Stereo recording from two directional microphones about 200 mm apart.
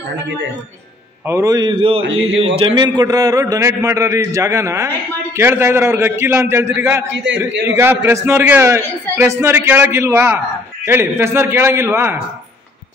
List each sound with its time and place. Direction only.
1.2 s a man's voice: 15° right (ahead or behind)
7.1 s a man's voice: 65° right (ahead or behind)
7.6 s a man's voice: 10° right (ahead or behind)